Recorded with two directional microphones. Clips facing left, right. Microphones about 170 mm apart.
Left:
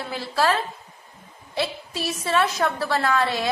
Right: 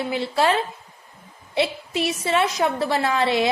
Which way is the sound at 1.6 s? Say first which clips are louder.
Right 5 dB; 20° right (ahead or behind).